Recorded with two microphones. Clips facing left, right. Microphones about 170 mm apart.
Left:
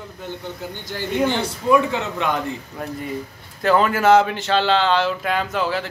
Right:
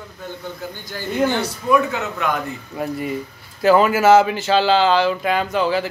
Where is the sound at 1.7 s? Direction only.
25° left (ahead or behind).